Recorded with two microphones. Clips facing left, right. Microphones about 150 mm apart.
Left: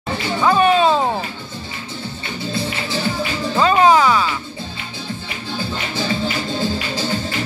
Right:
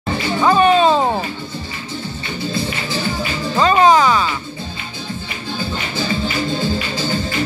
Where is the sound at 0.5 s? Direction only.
5° left (ahead or behind).